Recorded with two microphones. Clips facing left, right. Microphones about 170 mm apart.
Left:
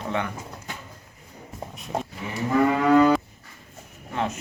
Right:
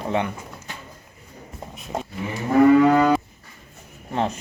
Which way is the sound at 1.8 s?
Centre (ahead or behind).